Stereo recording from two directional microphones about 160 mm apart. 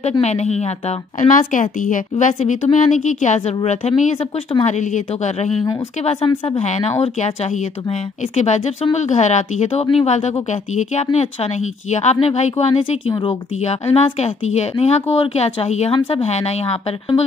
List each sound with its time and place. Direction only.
0.2 s a woman's voice: 45° left (ahead or behind)
6.0 s speech: 30° left (ahead or behind)
6.6 s a woman's voice: 45° left (ahead or behind)
8.4 s a woman's voice: 45° left (ahead or behind)
13.1 s speech: 20° left (ahead or behind)
13.7 s speech: 40° left (ahead or behind)